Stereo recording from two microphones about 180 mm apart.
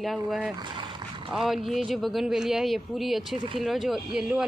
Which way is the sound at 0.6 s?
25° right (ahead or behind).